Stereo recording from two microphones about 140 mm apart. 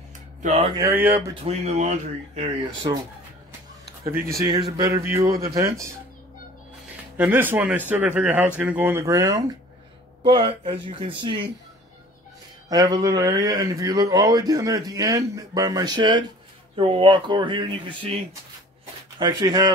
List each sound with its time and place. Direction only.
0.7 s a man's voice: 20° right (ahead or behind)
1.4 s speech: 55° right (ahead or behind)
4.1 s a man's voice: 20° right (ahead or behind)
7.2 s speech: 15° right (ahead or behind)
10.2 s speech: 40° right (ahead or behind)
12.6 s a man's voice: 25° right (ahead or behind)
19.1 s a man's voice: 30° right (ahead or behind)